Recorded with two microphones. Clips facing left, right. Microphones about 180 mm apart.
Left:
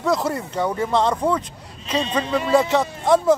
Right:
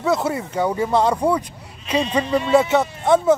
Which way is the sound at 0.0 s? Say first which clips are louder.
Right 1 dB; 5° right (ahead or behind).